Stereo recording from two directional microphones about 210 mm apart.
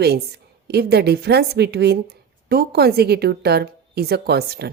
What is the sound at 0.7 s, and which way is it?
A woman's voice, 50° right (ahead or behind).